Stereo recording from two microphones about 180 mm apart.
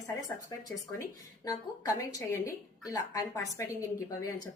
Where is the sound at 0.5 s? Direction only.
25° left (ahead or behind).